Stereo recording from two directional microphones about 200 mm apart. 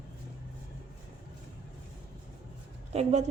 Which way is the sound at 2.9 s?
35° right (ahead or behind).